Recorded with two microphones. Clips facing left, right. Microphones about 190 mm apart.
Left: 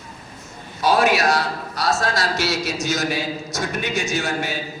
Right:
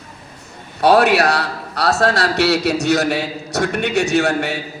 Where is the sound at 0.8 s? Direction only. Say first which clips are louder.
Right 5 dB; 65° right (ahead or behind).